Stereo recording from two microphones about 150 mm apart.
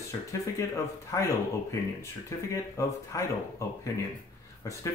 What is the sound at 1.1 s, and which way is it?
Speech, 20° left (ahead or behind).